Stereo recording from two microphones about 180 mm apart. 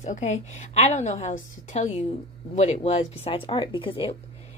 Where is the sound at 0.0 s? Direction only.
40° left (ahead or behind).